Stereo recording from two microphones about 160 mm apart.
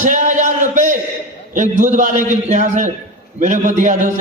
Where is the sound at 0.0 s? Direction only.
50° right (ahead or behind).